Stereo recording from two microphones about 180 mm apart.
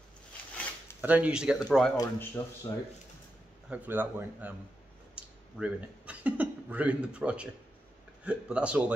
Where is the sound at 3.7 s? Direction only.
10° right (ahead or behind).